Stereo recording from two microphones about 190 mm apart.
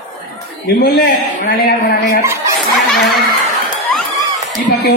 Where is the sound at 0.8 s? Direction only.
55° left (ahead or behind).